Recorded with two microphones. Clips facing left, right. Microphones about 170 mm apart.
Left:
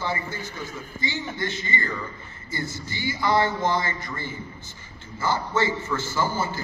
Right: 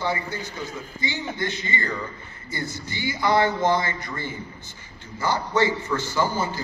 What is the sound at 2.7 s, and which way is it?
A man's voice, 20° right (ahead or behind).